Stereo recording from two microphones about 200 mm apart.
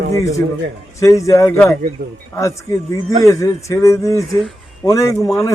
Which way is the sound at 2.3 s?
15° left (ahead or behind).